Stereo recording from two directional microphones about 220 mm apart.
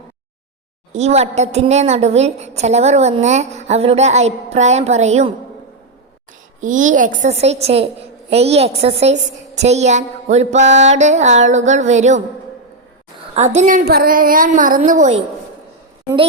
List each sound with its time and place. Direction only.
0.9 s a woman's voice: 30° right (ahead or behind)
6.6 s a woman's voice: 35° right (ahead or behind)
13.3 s a woman's voice: 30° right (ahead or behind)